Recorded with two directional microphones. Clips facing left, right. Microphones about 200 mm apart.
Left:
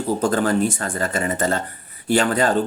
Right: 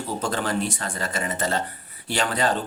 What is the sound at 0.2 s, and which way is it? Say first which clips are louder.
Speech: left 6 dB; 45° left (ahead or behind).